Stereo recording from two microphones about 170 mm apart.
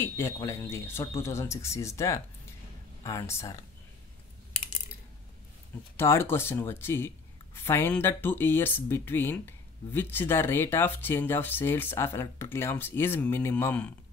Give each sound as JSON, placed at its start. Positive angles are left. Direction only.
{"t": 0.0, "sound": "speech", "side_deg": 15}
{"t": 5.9, "sound": "speech", "side_deg": 15}